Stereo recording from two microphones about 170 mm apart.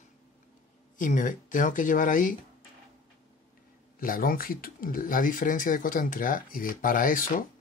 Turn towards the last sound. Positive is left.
turn(degrees=55)  # may be behind; listen again after turning